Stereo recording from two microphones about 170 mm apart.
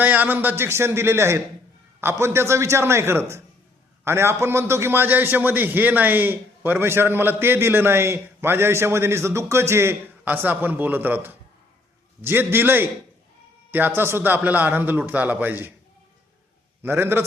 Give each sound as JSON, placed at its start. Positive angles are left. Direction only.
{"t": 0.0, "sound": "a man's voice", "side_deg": -10}
{"t": 16.8, "sound": "a man's voice", "side_deg": -15}